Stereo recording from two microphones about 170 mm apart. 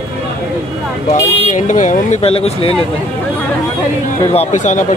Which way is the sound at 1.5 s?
45° left (ahead or behind).